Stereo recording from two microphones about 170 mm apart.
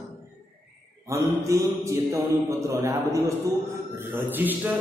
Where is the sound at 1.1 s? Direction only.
15° right (ahead or behind).